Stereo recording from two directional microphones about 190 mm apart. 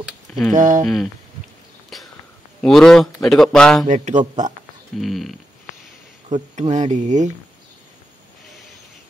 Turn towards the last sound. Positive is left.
turn(degrees=-40)  # may be behind; listen again after turning